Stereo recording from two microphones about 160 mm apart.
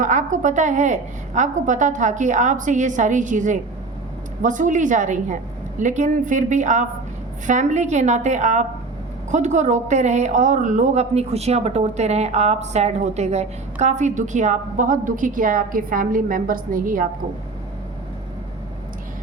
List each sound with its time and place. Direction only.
0.0 s a woman's voice: 55° right (ahead or behind)